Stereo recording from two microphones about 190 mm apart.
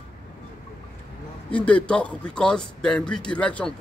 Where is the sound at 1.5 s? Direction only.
5° left (ahead or behind).